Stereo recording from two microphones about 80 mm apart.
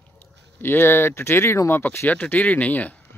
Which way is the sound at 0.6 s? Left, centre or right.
Left.